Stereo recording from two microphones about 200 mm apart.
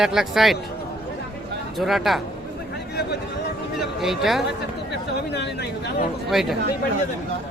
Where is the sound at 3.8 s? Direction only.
Centre (ahead or behind).